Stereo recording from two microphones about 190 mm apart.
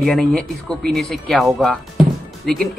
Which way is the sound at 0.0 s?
Centre (ahead or behind).